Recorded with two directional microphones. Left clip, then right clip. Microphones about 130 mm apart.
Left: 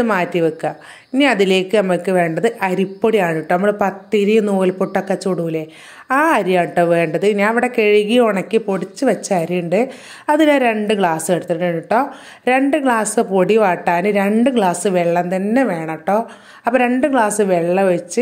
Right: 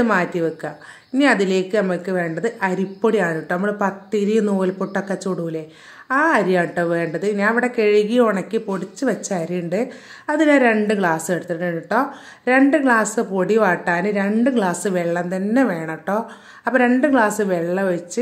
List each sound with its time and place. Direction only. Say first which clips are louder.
0.0 s a woman's voice: left 3 dB; 20° left (ahead or behind)